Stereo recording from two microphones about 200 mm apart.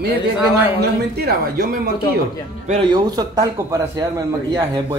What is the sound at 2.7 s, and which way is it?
A man's voice, 20° right (ahead or behind).